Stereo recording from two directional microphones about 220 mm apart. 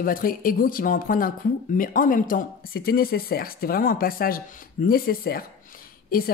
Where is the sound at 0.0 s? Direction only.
40° left (ahead or behind).